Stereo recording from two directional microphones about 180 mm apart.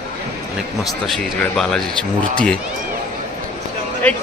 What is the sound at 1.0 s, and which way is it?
Speech, centre (ahead or behind).